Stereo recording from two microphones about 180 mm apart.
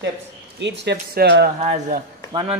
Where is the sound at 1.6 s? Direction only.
35° right (ahead or behind).